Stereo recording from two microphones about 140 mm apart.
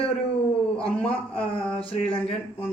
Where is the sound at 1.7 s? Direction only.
45° left (ahead or behind).